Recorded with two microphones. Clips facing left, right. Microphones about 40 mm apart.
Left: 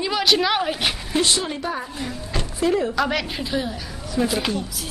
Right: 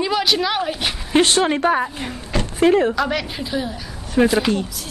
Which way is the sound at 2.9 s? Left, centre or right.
Centre.